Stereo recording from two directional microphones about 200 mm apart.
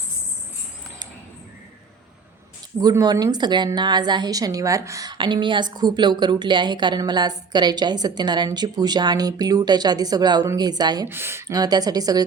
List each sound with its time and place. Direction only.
2.8 s a woman's voice: 20° right (ahead or behind)